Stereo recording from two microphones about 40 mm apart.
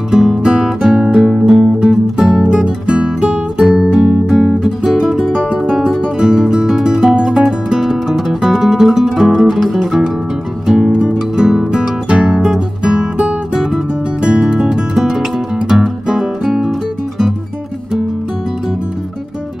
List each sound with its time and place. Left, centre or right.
0.1 s music: centre
0.4 s music: centre
5.7 s guitar: centre
6.7 s music: centre
10.7 s music: centre
15.0 s music: centre